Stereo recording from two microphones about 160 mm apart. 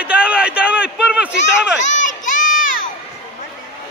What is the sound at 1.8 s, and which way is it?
Crowd, 50° left (ahead or behind).